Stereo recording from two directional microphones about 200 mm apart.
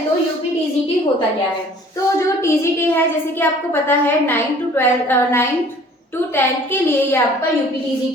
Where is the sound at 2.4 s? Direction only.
15° left (ahead or behind).